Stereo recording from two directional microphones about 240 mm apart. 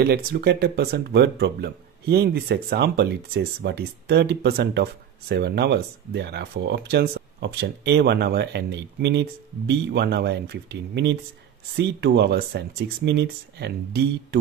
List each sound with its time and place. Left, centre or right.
0.0 s speech: right